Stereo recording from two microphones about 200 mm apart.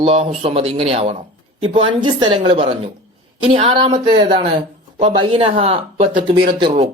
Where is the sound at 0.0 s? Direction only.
30° right (ahead or behind).